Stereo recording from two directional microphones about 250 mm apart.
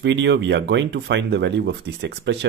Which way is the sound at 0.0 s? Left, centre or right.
Right.